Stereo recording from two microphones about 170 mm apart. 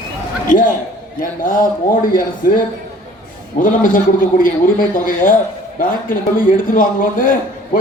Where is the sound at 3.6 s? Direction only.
50° left (ahead or behind).